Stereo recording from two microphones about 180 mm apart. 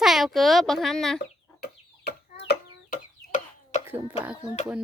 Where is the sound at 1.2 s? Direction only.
65° left (ahead or behind); by 3.8 s 50° left (ahead or behind).